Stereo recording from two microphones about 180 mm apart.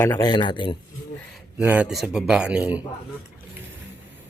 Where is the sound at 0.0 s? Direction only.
20° left (ahead or behind).